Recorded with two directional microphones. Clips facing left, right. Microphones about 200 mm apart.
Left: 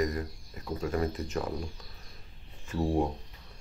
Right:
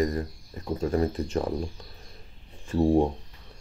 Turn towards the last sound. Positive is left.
turn(degrees=-30)  # may be behind; listen again after turning